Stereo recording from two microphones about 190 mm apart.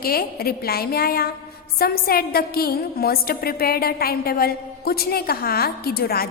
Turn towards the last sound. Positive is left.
turn(degrees=55)  # may be behind; listen again after turning